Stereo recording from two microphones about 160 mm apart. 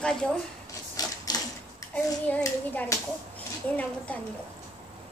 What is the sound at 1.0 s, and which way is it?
Typewriter, 25° left (ahead or behind).